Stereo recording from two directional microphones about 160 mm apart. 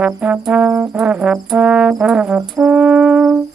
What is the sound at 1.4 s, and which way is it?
Music, centre (ahead or behind).